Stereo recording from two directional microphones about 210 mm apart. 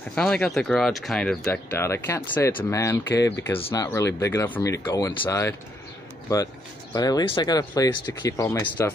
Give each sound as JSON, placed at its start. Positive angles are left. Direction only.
{"t": 0.1, "sound": "speech", "side_deg": 5}